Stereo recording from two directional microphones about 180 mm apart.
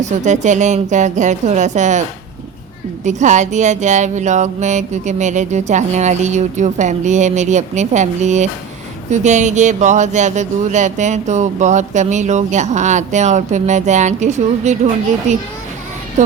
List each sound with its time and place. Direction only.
0.0 s speech: 40° right (ahead or behind)